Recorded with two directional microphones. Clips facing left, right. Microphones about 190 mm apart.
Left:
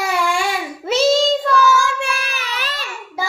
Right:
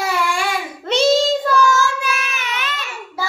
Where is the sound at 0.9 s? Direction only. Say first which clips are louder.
Even; centre (ahead or behind).